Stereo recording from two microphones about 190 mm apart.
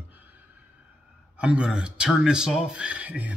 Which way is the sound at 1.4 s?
5° right (ahead or behind).